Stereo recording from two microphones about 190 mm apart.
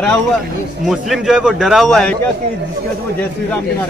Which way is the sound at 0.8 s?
Centre (ahead or behind).